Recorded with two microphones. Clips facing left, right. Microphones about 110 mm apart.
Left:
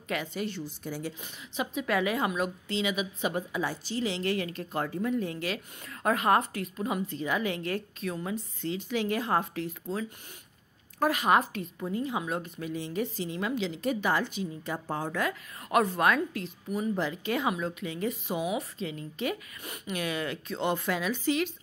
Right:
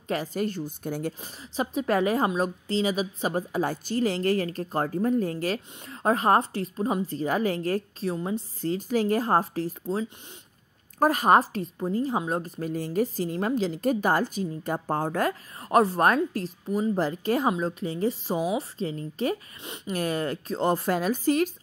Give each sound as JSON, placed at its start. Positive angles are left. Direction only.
{"t": 0.1, "sound": "a woman's voice", "side_deg": -40}
{"t": 1.2, "sound": "a woman's voice", "side_deg": -35}
{"t": 8.5, "sound": "a woman's voice", "side_deg": -40}
{"t": 11.0, "sound": "a woman's voice", "side_deg": -40}